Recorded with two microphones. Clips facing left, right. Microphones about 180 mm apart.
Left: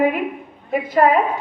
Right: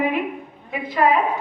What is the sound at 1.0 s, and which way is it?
Speech, 50° left (ahead or behind).